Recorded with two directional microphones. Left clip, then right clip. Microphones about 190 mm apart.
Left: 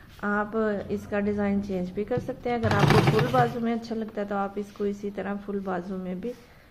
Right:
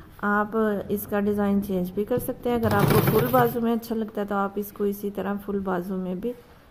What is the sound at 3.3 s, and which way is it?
Speech, 50° right (ahead or behind).